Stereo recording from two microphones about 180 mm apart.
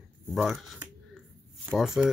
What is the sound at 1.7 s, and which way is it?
Speech, 5° right (ahead or behind).